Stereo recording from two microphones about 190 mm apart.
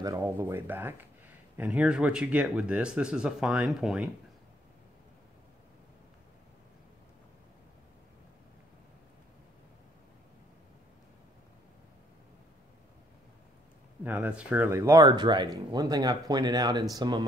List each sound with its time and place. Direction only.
0.0 s speech: 15° right (ahead or behind)
14.0 s speech: 10° right (ahead or behind)